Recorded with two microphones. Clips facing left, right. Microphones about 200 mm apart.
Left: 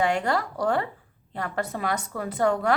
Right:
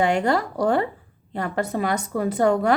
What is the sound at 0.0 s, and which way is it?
Speech, 20° right (ahead or behind).